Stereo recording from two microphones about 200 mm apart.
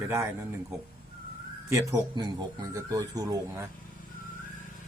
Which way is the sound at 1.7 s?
15° right (ahead or behind).